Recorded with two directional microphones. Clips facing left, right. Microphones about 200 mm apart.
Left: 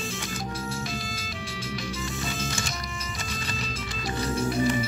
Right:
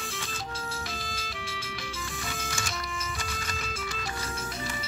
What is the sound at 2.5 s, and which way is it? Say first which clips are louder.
Music: left 2 dB; 35° left (ahead or behind).